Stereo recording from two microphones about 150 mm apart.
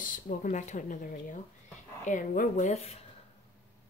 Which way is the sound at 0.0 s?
65° left (ahead or behind).